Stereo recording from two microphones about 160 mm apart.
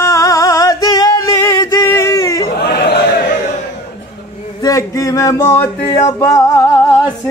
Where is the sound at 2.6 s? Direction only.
90° left.